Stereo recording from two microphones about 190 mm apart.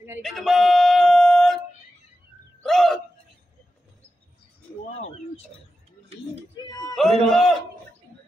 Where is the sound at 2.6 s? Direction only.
Centre (ahead or behind).